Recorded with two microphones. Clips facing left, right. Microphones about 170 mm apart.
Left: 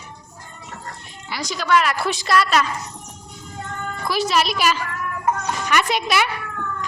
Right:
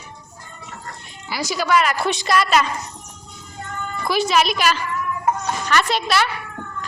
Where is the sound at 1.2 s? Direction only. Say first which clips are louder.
Right 1 dB; 5° right (ahead or behind).